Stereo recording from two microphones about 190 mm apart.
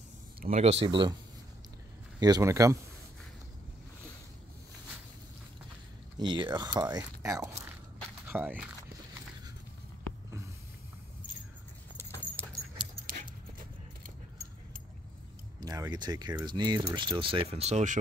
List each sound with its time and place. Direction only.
0.5 s speech: 35° right (ahead or behind)
2.1 s speech: 20° right (ahead or behind)
6.1 s speech: 25° right (ahead or behind)
12.0 s keys jangling: 10° left (ahead or behind)
13.0 s dog: 45° right (ahead or behind)
15.6 s speech: 20° right (ahead or behind); by 17.9 s 35° right (ahead or behind)